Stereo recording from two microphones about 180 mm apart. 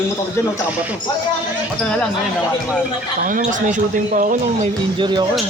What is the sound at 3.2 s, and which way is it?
Speech, 45° right (ahead or behind).